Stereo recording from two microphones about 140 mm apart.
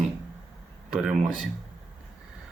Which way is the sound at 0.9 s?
5° right (ahead or behind).